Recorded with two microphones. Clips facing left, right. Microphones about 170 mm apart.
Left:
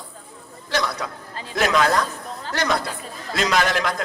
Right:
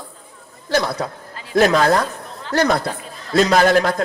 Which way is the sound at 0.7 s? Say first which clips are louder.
Right 5 dB; 35° right (ahead or behind).